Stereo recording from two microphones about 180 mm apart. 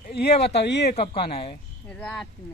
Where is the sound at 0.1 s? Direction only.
65° left (ahead or behind).